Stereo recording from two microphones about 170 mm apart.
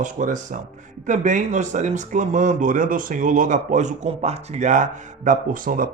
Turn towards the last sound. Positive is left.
turn(degrees=-55)  # may be behind; listen again after turning